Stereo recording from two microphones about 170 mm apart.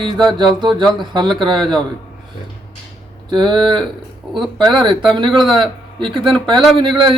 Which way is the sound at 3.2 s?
25° right (ahead or behind).